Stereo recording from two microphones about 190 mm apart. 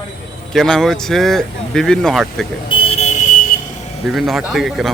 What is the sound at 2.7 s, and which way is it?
Vehicle, 30° left (ahead or behind).